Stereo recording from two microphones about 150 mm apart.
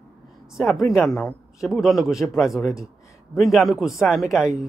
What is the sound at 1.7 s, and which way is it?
Speech, centre (ahead or behind).